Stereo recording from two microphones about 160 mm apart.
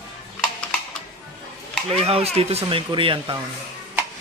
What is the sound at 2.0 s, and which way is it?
Speech, 40° right (ahead or behind).